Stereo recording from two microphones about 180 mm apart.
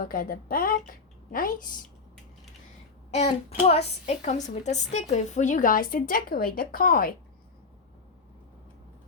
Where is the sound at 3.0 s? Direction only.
40° left (ahead or behind); by 7.1 s 55° left (ahead or behind).